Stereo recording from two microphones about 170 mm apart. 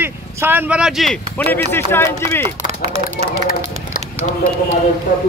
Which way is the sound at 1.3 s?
10° left (ahead or behind).